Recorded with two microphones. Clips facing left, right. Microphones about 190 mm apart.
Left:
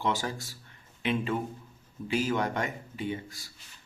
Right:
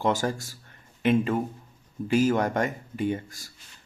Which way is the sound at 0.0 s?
45° right (ahead or behind).